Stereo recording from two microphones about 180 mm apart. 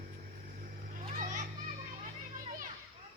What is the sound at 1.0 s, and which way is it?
Children playing, 40° right (ahead or behind).